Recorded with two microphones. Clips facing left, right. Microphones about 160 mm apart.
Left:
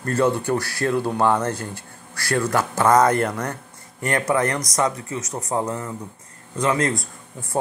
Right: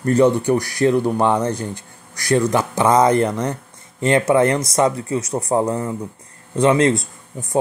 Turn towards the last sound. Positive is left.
turn(degrees=-25)  # may be behind; listen again after turning